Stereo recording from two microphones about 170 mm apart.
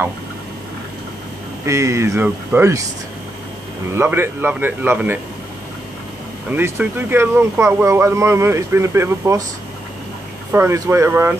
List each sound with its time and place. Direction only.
1.7 s speech: 15° right (ahead or behind)
3.9 s speech: 15° right (ahead or behind)
6.5 s speech: 10° right (ahead or behind)
10.5 s speech: 15° right (ahead or behind)